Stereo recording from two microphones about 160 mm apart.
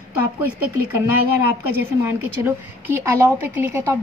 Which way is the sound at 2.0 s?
15° right (ahead or behind).